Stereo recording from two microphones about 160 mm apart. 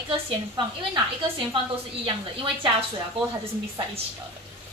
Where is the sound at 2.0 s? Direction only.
35° right (ahead or behind).